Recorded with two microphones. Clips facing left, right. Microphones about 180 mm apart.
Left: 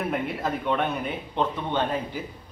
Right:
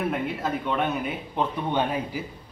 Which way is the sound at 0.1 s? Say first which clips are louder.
Even; centre (ahead or behind).